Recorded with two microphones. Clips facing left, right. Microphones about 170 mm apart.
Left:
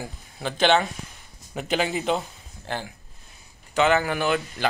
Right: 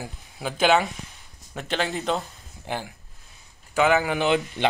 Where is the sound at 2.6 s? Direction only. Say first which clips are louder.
Right 1 dB; 10° right (ahead or behind).